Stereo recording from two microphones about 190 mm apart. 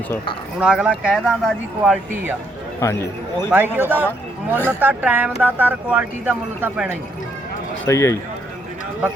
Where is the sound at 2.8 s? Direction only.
15° left (ahead or behind).